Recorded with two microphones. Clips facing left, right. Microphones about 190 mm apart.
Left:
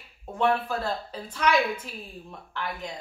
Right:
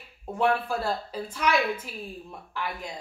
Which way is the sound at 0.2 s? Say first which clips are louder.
Even; 10° right (ahead or behind).